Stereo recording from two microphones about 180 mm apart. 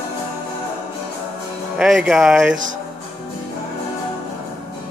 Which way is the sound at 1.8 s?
Centre (ahead or behind).